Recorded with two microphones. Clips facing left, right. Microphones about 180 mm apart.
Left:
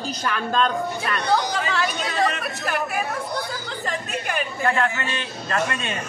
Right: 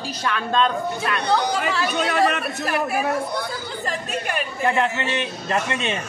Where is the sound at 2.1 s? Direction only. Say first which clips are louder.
Right 5 dB; 60° right (ahead or behind).